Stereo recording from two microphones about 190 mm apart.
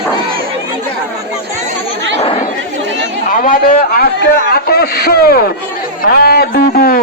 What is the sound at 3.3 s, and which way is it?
Speech, 45° left (ahead or behind).